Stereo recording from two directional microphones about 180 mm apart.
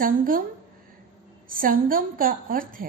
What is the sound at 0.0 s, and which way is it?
Speech, 50° right (ahead or behind).